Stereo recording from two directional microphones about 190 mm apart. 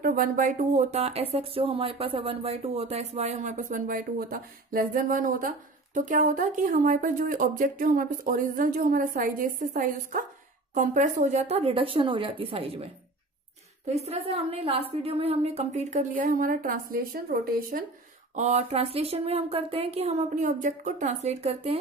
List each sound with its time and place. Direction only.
0.0 s speech: 50° right (ahead or behind)
18.3 s speech: 35° right (ahead or behind)